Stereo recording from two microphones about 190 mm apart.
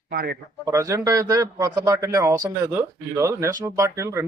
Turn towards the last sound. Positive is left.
turn(degrees=-15)  # may be behind; listen again after turning